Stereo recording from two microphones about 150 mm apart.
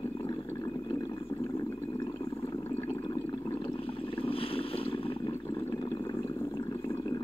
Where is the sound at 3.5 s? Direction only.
35° left (ahead or behind).